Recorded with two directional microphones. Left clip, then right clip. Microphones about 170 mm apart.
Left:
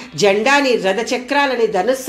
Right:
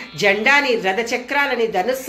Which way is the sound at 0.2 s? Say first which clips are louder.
Left 2 dB; 35° left (ahead or behind).